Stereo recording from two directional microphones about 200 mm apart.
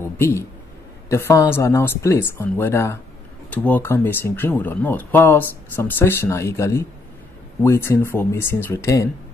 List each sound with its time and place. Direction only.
0.2 s a man's voice: 15° left (ahead or behind)